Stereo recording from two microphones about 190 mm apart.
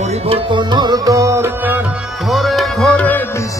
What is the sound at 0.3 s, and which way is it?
Music, 25° right (ahead or behind).